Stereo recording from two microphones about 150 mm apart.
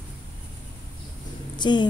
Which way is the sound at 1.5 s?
30° left (ahead or behind).